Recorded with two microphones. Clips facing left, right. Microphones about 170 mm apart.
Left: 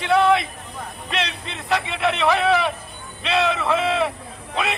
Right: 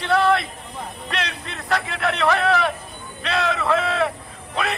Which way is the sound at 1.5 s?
Centre (ahead or behind).